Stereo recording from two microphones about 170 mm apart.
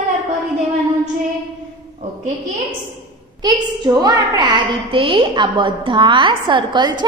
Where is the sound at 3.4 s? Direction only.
25° right (ahead or behind).